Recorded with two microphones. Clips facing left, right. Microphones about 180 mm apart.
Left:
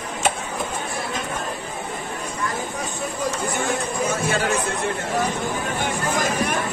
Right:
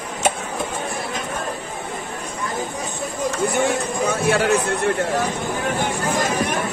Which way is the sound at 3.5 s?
60° right (ahead or behind).